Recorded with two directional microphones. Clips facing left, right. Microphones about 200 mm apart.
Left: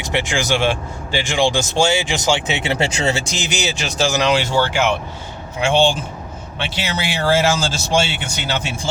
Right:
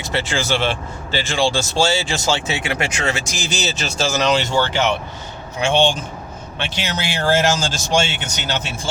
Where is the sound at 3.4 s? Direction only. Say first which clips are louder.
Left 1 dB; 15° left (ahead or behind).